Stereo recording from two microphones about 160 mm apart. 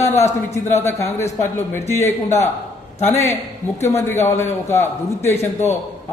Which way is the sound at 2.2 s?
45° left (ahead or behind).